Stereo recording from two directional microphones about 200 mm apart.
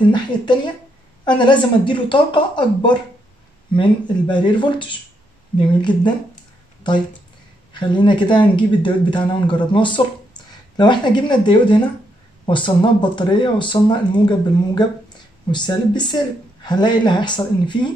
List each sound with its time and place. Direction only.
0.1 s speech: 25° left (ahead or behind)
7.7 s speech: 25° left (ahead or behind)